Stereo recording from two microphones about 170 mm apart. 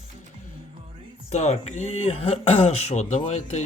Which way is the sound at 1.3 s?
40° left (ahead or behind).